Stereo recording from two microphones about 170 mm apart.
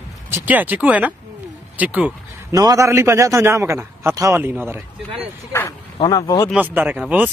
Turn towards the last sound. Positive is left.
turn(degrees=-5)  # may be behind; listen again after turning